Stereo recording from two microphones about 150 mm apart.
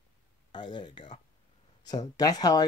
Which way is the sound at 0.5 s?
30° left (ahead or behind).